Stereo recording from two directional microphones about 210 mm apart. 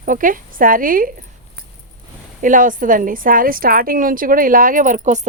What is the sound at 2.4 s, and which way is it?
A woman's voice, 40° right (ahead or behind).